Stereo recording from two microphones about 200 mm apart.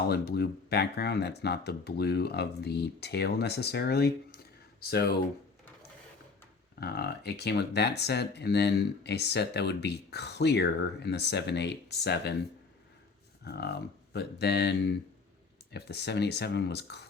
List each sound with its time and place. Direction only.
0.1 s speech: 50° left (ahead or behind)
6.7 s speech: 55° left (ahead or behind)
13.4 s speech: 55° left (ahead or behind)